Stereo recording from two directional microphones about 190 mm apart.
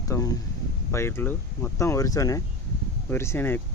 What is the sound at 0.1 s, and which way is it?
Speech, 15° left (ahead or behind).